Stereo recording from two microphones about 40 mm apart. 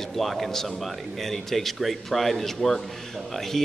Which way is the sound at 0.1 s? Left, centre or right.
Centre.